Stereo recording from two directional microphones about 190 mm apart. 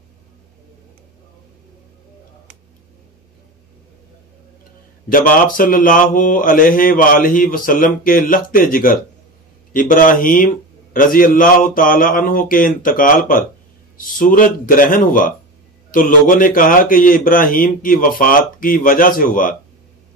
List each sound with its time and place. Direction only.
5.1 s speech: 45° left (ahead or behind)